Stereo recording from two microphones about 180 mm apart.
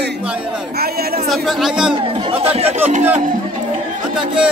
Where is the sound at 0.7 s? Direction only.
60° right (ahead or behind).